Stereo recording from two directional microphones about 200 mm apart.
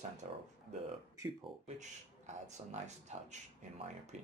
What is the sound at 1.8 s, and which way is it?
Speech, 35° right (ahead or behind).